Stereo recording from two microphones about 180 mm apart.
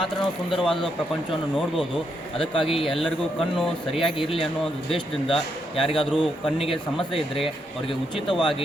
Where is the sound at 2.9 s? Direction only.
Centre (ahead or behind).